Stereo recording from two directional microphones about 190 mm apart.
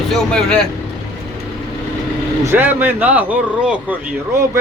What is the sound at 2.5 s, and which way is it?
A man's voice, 10° right (ahead or behind).